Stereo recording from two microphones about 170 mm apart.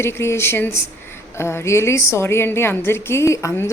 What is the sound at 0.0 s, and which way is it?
A woman's voice, 15° left (ahead or behind).